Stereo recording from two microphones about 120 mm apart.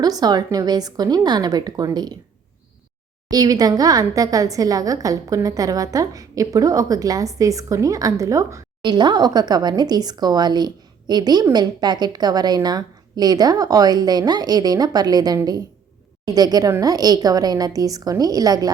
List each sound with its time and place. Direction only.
0.0 s a woman's voice: 35° right (ahead or behind)
3.2 s a woman's voice: 30° right (ahead or behind)
8.8 s a woman's voice: 40° right (ahead or behind)